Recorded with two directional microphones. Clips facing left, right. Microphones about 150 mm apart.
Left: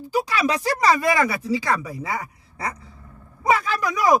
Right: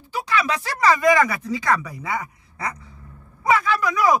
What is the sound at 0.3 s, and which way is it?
Speech, 35° left (ahead or behind).